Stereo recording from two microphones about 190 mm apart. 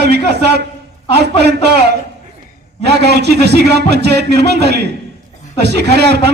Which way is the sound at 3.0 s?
60° right (ahead or behind).